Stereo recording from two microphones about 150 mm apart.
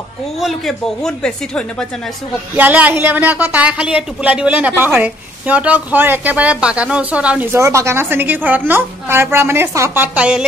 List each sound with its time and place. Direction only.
0.4 s speech: centre (ahead or behind)
2.5 s a woman's voice: 10° right (ahead or behind)